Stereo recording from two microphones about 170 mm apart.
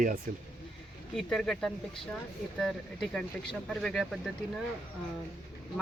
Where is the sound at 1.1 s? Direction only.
Centre (ahead or behind).